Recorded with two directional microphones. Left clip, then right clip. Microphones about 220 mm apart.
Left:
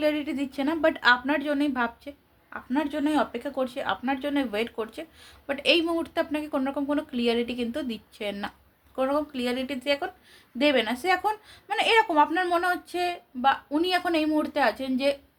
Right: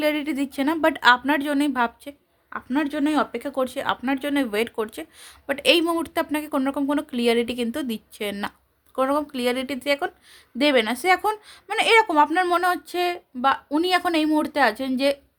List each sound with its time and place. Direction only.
0.0 s speech: 50° right (ahead or behind)